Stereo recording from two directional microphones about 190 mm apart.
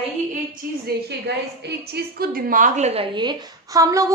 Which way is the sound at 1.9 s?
55° right (ahead or behind).